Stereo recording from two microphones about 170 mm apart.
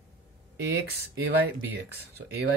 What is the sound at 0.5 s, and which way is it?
Speech, 80° right.